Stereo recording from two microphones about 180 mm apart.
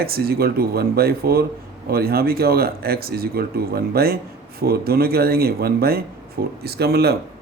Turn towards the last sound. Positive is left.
turn(degrees=-60)  # may be behind; listen again after turning